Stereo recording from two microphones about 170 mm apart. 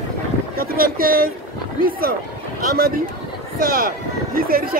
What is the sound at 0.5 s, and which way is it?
A man's voice, 60° right (ahead or behind).